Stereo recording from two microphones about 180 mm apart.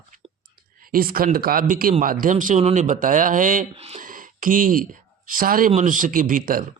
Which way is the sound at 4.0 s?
50° right (ahead or behind).